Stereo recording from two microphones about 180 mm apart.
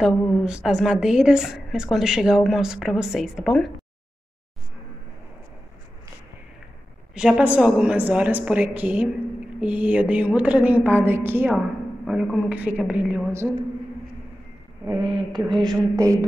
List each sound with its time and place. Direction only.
0.0 s a woman's voice: centre (ahead or behind)
7.2 s a woman's voice: 5° right (ahead or behind)
11.5 s a woman's voice: centre (ahead or behind)
14.9 s speech: 25° right (ahead or behind)